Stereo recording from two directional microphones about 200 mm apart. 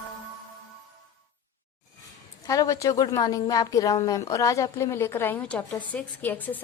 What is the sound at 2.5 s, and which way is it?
A woman's voice, 15° left (ahead or behind).